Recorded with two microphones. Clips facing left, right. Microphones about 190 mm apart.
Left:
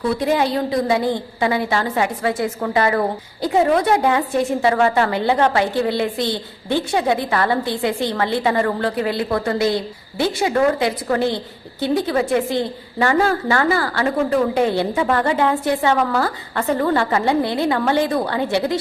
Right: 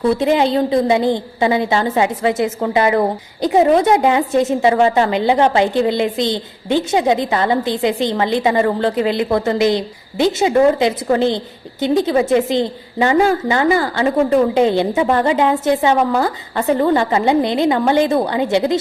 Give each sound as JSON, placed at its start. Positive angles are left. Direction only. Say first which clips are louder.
{"t": 0.2, "sound": "a woman's voice", "louder": "right 4 dB", "side_deg": -20}